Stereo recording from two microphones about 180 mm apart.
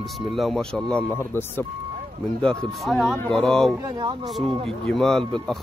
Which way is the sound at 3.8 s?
25° right (ahead or behind).